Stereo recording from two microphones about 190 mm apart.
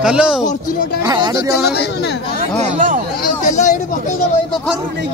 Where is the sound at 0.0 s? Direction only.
5° right (ahead or behind).